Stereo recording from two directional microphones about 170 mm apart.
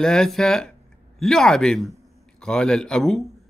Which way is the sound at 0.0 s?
5° left (ahead or behind).